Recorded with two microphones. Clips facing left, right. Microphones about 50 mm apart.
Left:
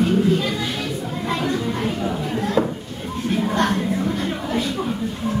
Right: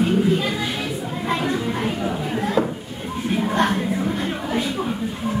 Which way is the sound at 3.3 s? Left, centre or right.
Centre.